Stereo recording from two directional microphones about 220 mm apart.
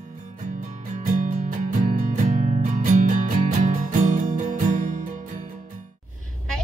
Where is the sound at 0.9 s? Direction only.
35° right (ahead or behind).